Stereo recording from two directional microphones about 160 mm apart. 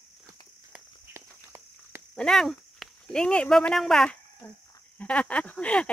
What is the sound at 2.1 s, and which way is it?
Speech, 5° left (ahead or behind).